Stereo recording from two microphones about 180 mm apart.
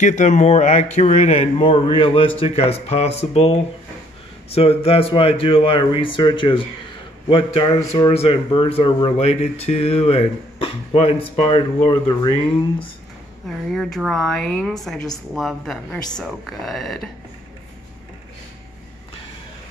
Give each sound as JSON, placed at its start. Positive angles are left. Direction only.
{"t": 0.0, "sound": "speech", "side_deg": 40}
{"t": 4.6, "sound": "speech", "side_deg": 30}
{"t": 13.5, "sound": "a woman's voice", "side_deg": 0}